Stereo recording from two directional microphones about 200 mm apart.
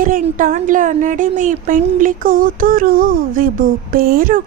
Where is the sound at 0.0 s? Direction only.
45° right (ahead or behind).